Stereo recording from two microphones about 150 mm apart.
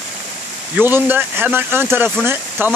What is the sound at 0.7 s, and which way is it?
Speech, 15° right (ahead or behind).